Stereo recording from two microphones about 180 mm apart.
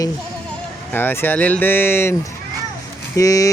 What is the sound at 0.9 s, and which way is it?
Speech, 10° left (ahead or behind).